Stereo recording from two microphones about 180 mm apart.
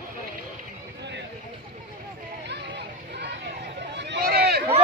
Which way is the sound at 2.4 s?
70° right (ahead or behind).